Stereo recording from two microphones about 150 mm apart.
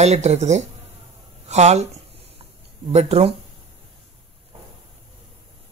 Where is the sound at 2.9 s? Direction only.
45° right (ahead or behind).